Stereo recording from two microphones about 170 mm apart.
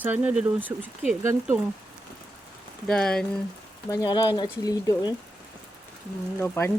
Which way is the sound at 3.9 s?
20° left (ahead or behind).